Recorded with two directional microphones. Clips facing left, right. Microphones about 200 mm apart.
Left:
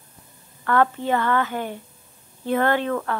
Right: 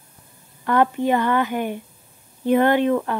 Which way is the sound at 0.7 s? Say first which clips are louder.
Right 2 dB; 15° right (ahead or behind).